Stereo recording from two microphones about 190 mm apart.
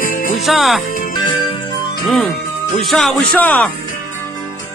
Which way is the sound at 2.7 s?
Centre (ahead or behind).